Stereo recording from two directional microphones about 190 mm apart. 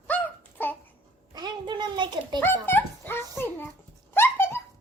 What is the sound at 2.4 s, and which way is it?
Dog, 10° left (ahead or behind).